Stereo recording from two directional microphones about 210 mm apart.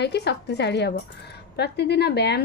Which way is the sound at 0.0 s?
55° left (ahead or behind).